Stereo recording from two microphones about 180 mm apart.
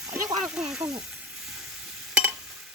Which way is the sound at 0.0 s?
5° right (ahead or behind).